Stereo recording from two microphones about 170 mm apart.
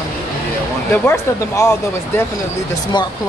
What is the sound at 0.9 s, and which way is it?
Speech, 15° left (ahead or behind).